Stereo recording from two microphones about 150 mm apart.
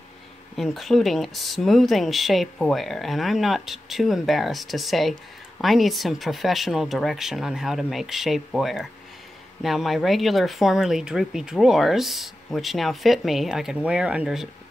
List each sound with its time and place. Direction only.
0.6 s speech: centre (ahead or behind)